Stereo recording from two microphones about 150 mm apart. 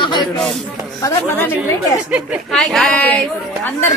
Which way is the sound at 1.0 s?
15° left (ahead or behind).